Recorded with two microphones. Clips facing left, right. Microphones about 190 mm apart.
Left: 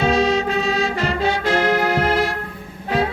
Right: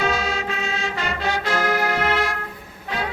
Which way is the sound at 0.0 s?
35° left (ahead or behind).